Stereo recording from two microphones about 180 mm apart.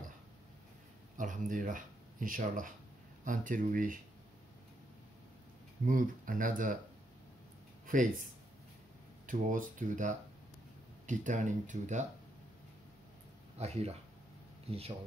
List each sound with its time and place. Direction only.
1.1 s speech: 45° right (ahead or behind)
5.9 s speech: 50° right (ahead or behind)
7.8 s speech: 45° right (ahead or behind)
13.6 s speech: 35° right (ahead or behind)